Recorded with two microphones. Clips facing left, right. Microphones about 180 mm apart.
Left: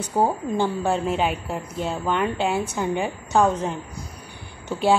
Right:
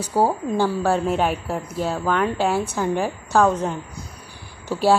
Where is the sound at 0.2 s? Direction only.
5° right (ahead or behind).